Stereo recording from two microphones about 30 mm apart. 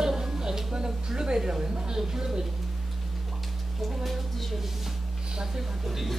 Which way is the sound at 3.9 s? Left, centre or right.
Centre.